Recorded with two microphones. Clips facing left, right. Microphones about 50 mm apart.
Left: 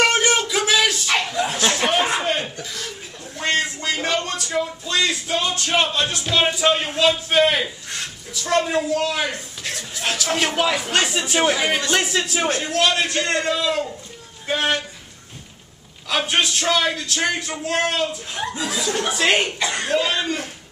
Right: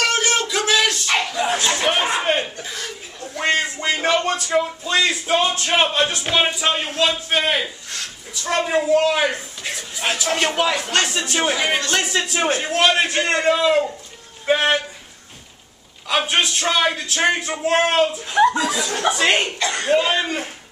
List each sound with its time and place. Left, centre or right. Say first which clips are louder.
0.0 s a sound: left 2 dB; left
0.4 s a sound: even; centre
3.3 s a sound: right 2 dB; right
5.2 s music: right 4 dB; right
6.4 s speech: left 2 dB; centre
8.9 s music: right 5 dB; right
9.6 s speech: right 1 dB; centre
12.4 s music: right 3 dB; centre
14.4 s speech: right 4 dB; right
16.1 s speech: right 1 dB; centre
17.3 s music: right 5 dB; right
19.1 s speech: even; centre
19.9 s music: right 4 dB; centre